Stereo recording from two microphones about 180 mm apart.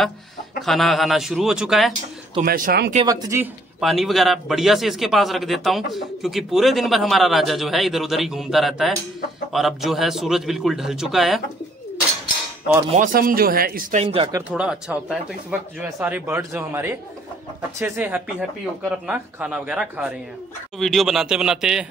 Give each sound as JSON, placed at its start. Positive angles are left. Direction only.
{"t": 0.6, "sound": "a man's voice", "side_deg": 0}
{"t": 2.4, "sound": "speech", "side_deg": -55}
{"t": 3.1, "sound": "speech", "side_deg": -15}
{"t": 3.8, "sound": "a man's voice", "side_deg": 0}
{"t": 12.9, "sound": "a man's voice", "side_deg": -50}
{"t": 13.9, "sound": "speech", "side_deg": -30}
{"t": 14.5, "sound": "a man's voice", "side_deg": -5}